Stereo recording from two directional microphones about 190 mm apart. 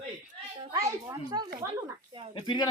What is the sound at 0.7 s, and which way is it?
Children playing, 20° right (ahead or behind).